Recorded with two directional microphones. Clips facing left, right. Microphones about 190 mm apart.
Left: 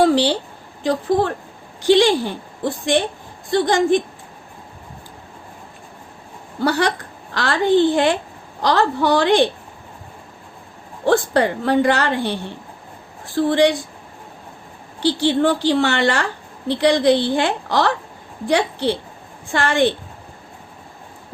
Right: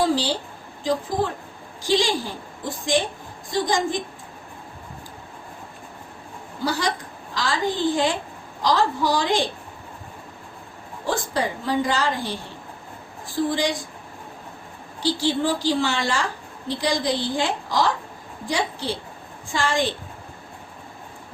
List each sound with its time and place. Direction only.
0.0 s a sound: 65° left (ahead or behind)
0.8 s a woman's voice: 65° left (ahead or behind)
6.6 s a woman's voice: 65° left (ahead or behind)
11.0 s a woman's voice: 65° left (ahead or behind)
15.0 s a woman's voice: 65° left (ahead or behind)